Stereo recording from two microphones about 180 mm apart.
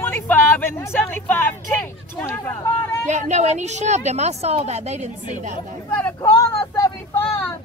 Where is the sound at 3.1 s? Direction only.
40° right (ahead or behind).